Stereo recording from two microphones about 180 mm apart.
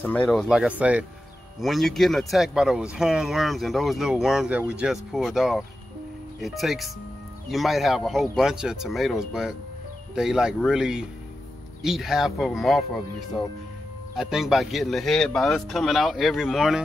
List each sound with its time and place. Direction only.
0.0 s speech: 10° left (ahead or behind)
14.1 s speech: centre (ahead or behind)